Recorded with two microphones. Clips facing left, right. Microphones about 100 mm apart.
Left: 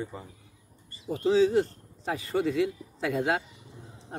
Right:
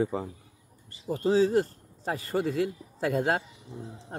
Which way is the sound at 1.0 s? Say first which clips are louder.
Left 1 dB; 40° right (ahead or behind).